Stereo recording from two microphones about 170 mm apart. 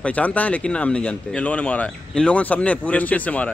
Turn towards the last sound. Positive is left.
turn(degrees=10)  # may be behind; listen again after turning